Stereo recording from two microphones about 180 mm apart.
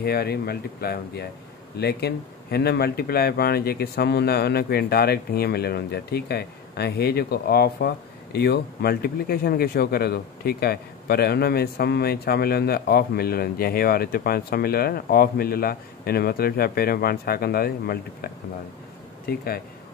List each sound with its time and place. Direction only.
0.0 s speech: 60° left (ahead or behind)